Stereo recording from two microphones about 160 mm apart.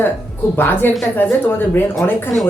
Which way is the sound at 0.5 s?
15° left (ahead or behind).